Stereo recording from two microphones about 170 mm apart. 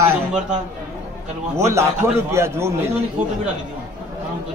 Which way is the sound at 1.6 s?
15° right (ahead or behind).